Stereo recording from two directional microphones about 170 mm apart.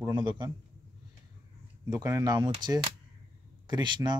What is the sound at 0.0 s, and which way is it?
Speech, 25° right (ahead or behind).